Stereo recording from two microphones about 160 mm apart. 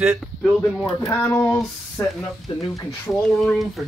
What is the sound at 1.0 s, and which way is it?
Speech, 15° left (ahead or behind).